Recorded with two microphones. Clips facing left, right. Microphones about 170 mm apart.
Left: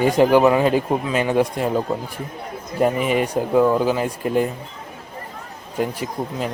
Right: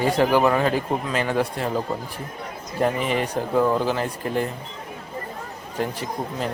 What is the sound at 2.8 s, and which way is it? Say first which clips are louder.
Speech: left 4 dB; 15° left (ahead or behind).